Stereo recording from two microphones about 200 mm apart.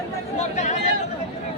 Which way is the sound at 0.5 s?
35° left (ahead or behind).